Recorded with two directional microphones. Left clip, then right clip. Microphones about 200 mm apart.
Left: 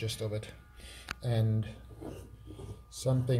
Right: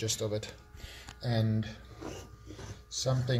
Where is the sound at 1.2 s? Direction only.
10° left (ahead or behind).